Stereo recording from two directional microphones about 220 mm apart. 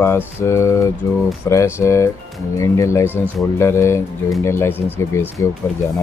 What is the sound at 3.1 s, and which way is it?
Speech, 10° right (ahead or behind).